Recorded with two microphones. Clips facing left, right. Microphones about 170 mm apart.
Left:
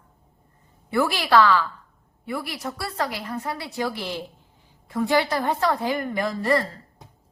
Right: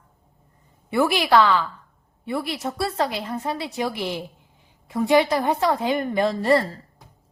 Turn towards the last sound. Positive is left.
turn(degrees=-30)  # may be behind; listen again after turning